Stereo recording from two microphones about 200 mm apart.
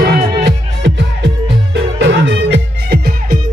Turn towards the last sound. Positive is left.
turn(degrees=-50)  # may be behind; listen again after turning